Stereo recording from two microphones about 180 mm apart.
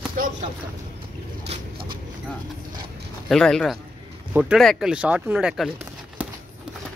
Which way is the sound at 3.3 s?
5° left (ahead or behind).